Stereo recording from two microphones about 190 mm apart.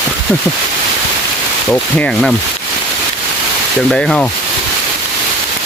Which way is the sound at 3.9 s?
5° left (ahead or behind).